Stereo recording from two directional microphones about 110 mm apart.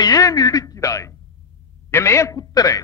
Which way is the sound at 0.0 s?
35° left (ahead or behind).